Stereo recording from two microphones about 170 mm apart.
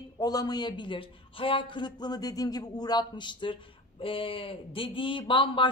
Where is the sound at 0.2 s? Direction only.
20° left (ahead or behind).